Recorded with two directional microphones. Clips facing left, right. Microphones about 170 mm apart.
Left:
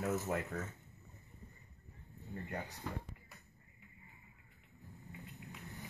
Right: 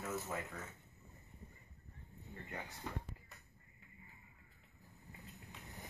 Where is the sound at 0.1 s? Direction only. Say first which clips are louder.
Left 6 dB; 50° left (ahead or behind).